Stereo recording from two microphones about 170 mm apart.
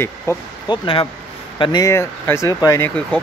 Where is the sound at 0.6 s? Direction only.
30° left (ahead or behind).